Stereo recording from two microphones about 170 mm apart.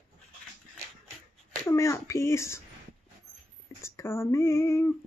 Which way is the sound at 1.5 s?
15° left (ahead or behind).